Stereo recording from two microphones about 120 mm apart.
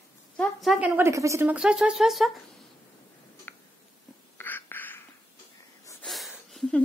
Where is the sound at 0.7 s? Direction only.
15° right (ahead or behind).